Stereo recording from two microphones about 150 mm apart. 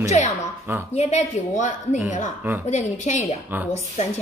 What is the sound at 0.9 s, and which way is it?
A woman's voice, 50° left (ahead or behind).